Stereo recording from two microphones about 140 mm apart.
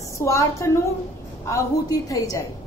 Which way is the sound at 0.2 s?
20° left (ahead or behind).